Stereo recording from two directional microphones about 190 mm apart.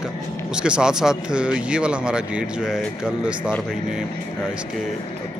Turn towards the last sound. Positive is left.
turn(degrees=-5)  # may be behind; listen again after turning